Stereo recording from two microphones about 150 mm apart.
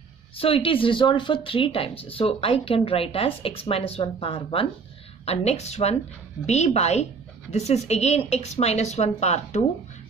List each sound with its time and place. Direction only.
0.4 s a woman's voice: 40° left (ahead or behind)